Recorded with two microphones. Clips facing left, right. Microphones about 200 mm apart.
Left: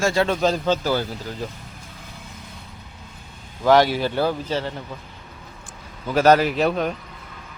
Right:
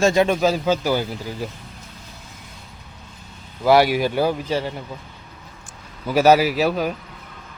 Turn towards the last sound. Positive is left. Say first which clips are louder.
# right 1 dB
turn(degrees=-5)  # may be behind; listen again after turning